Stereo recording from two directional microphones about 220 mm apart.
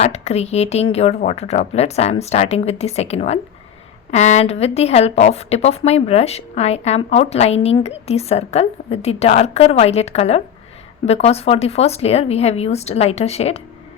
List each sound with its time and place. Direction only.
0.0 s a woman's voice: 30° left (ahead or behind)